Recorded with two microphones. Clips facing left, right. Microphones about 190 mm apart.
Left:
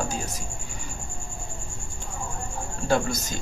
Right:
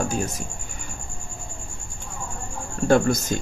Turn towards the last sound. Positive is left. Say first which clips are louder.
# right 6 dB
turn(degrees=-50)  # may be behind; listen again after turning